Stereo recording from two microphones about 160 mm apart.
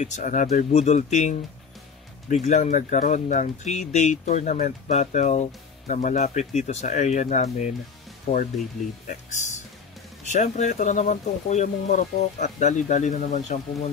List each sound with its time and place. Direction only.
0.0 s speech: 50° left (ahead or behind)
2.4 s speech: 45° left (ahead or behind)